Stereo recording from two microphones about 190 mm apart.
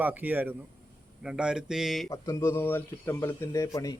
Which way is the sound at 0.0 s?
10° right (ahead or behind).